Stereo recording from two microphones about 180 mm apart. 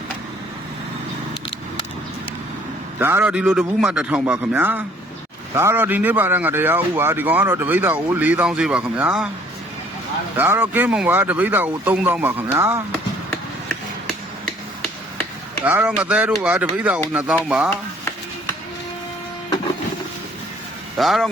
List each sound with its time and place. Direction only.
3.0 s speech: 10° right (ahead or behind)
10.3 s speech: 10° right (ahead or behind)
15.6 s speech: 10° right (ahead or behind)
21.0 s speech: centre (ahead or behind)